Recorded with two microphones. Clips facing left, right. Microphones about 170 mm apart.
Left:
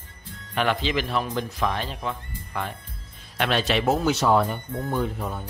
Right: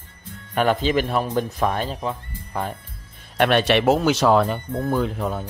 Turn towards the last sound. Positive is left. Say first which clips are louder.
# right 4 dB
turn(degrees=-90)